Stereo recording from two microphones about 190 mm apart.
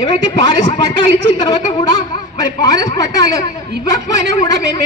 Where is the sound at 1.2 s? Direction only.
20° left (ahead or behind).